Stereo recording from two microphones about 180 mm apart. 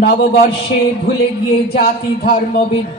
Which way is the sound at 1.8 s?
60° left (ahead or behind).